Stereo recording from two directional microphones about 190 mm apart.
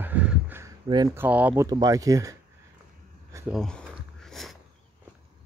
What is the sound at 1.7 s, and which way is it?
Speech, 20° right (ahead or behind).